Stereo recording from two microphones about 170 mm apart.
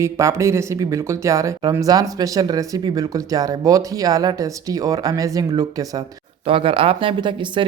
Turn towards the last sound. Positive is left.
turn(degrees=-30)  # may be behind; listen again after turning